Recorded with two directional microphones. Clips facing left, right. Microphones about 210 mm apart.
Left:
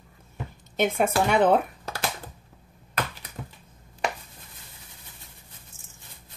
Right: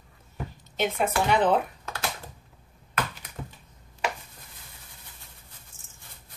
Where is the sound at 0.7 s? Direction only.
50° left (ahead or behind).